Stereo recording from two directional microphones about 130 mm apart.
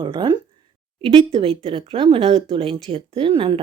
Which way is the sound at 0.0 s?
35° right (ahead or behind).